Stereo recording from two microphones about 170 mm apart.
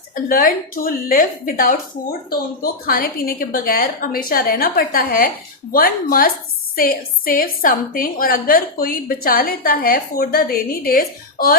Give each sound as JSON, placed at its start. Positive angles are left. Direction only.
{"t": 0.1, "sound": "a woman's voice", "side_deg": 55}